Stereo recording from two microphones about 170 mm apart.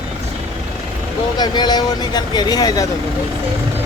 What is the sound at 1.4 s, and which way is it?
Speech, 25° left (ahead or behind).